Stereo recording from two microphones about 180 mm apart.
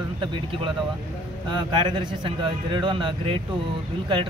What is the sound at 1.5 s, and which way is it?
Speech, 25° right (ahead or behind).